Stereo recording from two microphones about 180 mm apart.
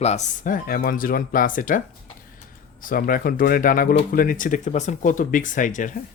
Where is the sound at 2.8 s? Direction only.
50° left (ahead or behind).